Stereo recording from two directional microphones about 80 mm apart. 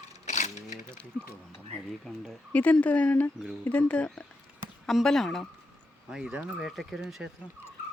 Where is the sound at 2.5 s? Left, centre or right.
Centre.